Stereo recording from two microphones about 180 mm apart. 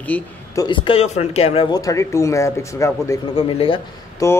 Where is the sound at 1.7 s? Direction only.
15° left (ahead or behind).